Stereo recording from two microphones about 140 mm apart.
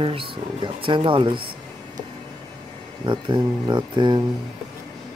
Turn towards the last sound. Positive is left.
turn(degrees=-35)  # may be behind; listen again after turning